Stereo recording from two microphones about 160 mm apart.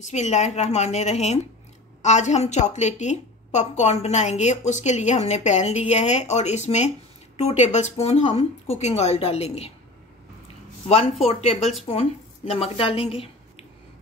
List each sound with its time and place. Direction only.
0.0 s a woman's voice: 45° left (ahead or behind)
10.9 s a woman's voice: 40° left (ahead or behind)